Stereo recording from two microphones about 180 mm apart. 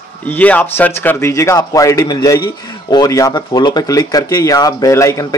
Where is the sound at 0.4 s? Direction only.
10° left (ahead or behind).